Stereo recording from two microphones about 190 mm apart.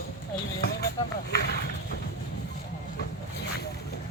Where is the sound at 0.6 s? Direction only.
55° left (ahead or behind).